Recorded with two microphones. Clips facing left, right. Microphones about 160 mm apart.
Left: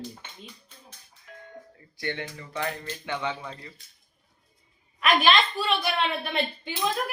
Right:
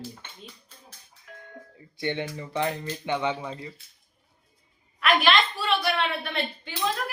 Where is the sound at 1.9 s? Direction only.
20° right (ahead or behind).